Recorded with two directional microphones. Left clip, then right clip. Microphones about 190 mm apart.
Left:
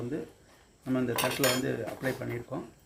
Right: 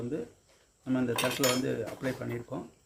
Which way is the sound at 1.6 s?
20° right (ahead or behind).